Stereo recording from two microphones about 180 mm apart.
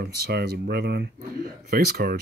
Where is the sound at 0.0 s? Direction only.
60° right (ahead or behind).